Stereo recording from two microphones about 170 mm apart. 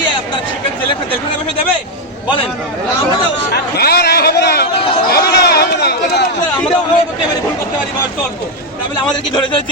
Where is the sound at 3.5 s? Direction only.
70° left (ahead or behind).